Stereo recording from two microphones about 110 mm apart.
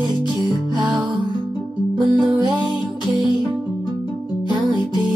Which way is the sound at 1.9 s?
40° right (ahead or behind).